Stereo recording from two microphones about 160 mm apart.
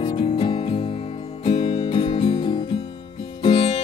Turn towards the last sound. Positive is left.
turn(degrees=30)  # may be behind; listen again after turning